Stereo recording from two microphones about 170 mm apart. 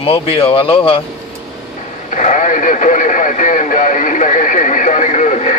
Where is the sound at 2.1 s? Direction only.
45° left (ahead or behind).